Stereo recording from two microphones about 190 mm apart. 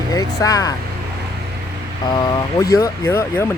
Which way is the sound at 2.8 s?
15° left (ahead or behind).